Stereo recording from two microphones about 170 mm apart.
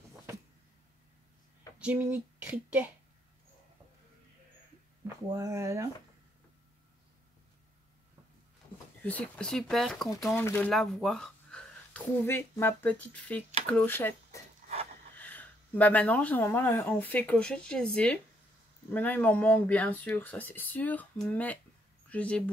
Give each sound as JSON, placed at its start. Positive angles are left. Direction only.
{"t": 1.8, "sound": "speech", "side_deg": -10}
{"t": 5.3, "sound": "speech", "side_deg": -20}
{"t": 9.0, "sound": "speech", "side_deg": 5}
{"t": 10.3, "sound": "speech", "side_deg": 15}
{"t": 14.6, "sound": "wood", "side_deg": -50}
{"t": 15.1, "sound": "speech", "side_deg": 10}